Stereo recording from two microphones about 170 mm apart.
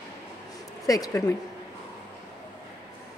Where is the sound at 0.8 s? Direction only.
20° left (ahead or behind).